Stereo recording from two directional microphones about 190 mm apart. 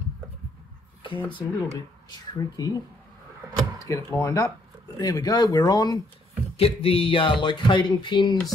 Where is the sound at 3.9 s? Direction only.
15° left (ahead or behind).